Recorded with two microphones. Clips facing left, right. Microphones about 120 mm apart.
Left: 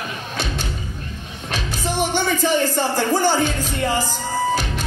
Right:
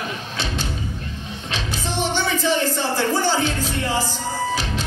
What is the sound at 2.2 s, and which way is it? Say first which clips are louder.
Music: left 2 dB; 50° left (ahead or behind).